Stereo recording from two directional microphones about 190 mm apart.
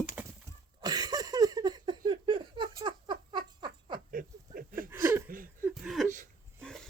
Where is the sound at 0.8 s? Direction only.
20° right (ahead or behind).